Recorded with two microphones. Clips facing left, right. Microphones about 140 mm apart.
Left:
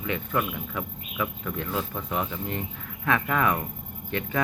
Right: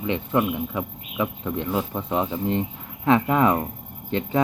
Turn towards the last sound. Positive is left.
turn(degrees=-25)  # may be behind; listen again after turning